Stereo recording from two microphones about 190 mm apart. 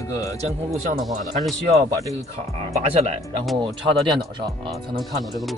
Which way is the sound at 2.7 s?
35° right (ahead or behind).